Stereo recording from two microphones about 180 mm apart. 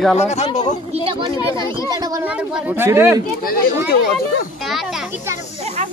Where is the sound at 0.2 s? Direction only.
40° left (ahead or behind).